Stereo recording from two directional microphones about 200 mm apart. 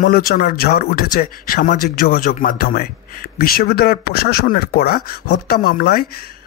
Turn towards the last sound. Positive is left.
turn(degrees=50)  # may be behind; listen again after turning